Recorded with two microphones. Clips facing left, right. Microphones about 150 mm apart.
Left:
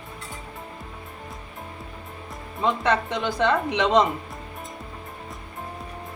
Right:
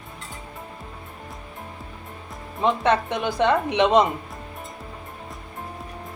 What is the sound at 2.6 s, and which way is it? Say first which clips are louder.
Speech: right 2 dB; 20° right (ahead or behind).